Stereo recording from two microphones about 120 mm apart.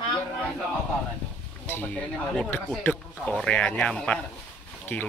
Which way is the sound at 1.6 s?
15° left (ahead or behind).